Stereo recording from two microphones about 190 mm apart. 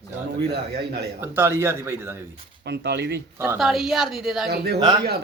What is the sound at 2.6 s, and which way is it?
Speech, 60° right (ahead or behind).